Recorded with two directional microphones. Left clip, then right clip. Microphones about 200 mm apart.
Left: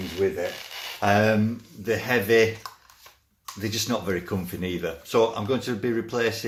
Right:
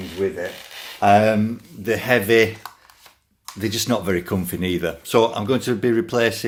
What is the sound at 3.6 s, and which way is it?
Speech, 45° right (ahead or behind).